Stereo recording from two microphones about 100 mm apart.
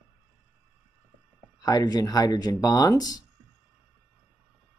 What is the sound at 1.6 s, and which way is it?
Speech, 40° left (ahead or behind).